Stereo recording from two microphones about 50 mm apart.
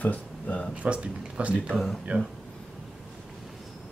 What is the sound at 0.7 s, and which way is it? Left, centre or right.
Speech, right.